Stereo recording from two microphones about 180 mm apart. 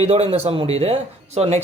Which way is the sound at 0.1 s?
35° right (ahead or behind).